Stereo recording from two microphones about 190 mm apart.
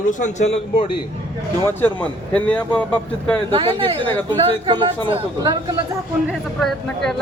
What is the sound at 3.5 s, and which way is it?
Speech, 30° right (ahead or behind).